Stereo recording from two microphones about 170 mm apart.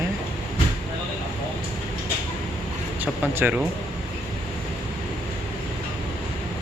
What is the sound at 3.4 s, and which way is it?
Speech, 10° right (ahead or behind).